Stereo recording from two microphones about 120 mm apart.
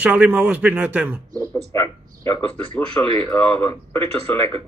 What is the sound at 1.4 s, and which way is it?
Speech, 25° left (ahead or behind).